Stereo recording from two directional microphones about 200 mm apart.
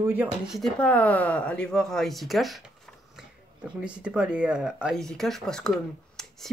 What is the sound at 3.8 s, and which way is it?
Speech, 5° right (ahead or behind).